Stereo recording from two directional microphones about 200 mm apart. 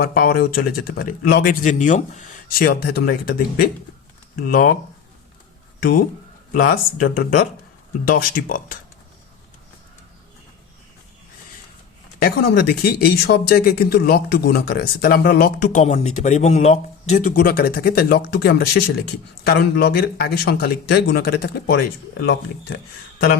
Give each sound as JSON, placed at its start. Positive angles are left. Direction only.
{"t": 0.0, "sound": "speech", "side_deg": 50}
{"t": 5.8, "sound": "speech", "side_deg": 45}
{"t": 12.2, "sound": "speech", "side_deg": 55}
{"t": 17.3, "sound": "speech", "side_deg": 50}
{"t": 22.2, "sound": "speech", "side_deg": 70}